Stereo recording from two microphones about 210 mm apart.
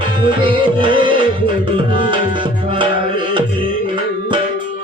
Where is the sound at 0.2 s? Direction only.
25° right (ahead or behind).